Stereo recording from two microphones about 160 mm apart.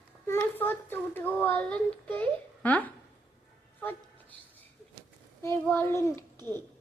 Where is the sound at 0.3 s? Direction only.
10° left (ahead or behind).